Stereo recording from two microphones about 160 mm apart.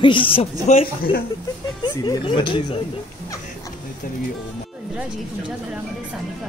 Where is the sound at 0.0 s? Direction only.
30° left (ahead or behind).